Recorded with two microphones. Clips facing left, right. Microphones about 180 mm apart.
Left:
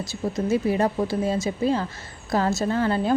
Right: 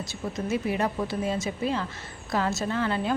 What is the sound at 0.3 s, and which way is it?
A woman's voice, 35° left (ahead or behind).